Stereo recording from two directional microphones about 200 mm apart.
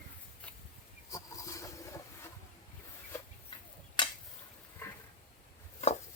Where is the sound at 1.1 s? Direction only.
15° left (ahead or behind).